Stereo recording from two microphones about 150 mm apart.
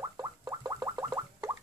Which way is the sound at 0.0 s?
20° right (ahead or behind).